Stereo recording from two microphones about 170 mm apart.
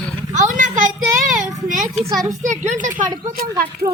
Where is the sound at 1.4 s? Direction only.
50° right (ahead or behind).